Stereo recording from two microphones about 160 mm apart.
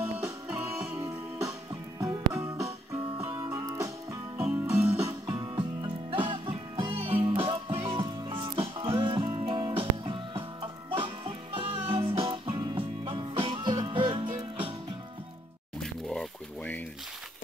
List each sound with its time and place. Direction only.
0.0 s music: 5° right (ahead or behind)
1.7 s music: 20° right (ahead or behind)
3.5 s music: 20° right (ahead or behind)
4.4 s music: 5° right (ahead or behind)
5.3 s music: 25° right (ahead or behind)
15.8 s a sound: centre (ahead or behind)